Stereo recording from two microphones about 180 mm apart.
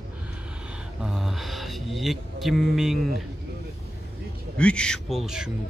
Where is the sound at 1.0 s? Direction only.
Centre (ahead or behind).